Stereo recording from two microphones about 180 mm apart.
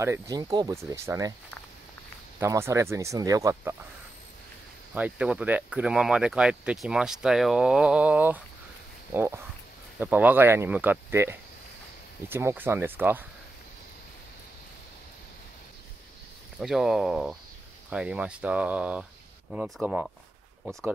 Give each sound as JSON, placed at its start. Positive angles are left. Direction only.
{"t": 0.0, "sound": "speech", "side_deg": -20}
{"t": 2.4, "sound": "speech", "side_deg": -15}
{"t": 4.9, "sound": "speech", "side_deg": -5}
{"t": 16.5, "sound": "speech", "side_deg": -5}